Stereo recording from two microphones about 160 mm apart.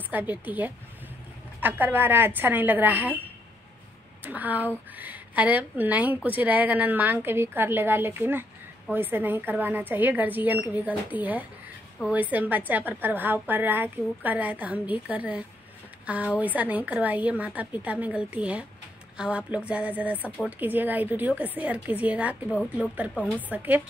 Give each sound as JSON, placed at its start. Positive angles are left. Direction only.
{"t": 0.1, "sound": "a woman's voice", "side_deg": -10}
{"t": 4.2, "sound": "a woman's voice", "side_deg": -10}